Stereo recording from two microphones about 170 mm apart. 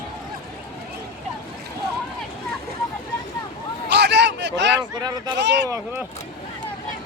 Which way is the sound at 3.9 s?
90° right.